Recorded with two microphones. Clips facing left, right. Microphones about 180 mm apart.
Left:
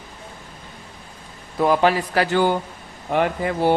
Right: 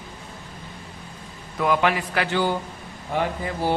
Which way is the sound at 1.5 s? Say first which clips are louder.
Left 4 dB; 35° left (ahead or behind).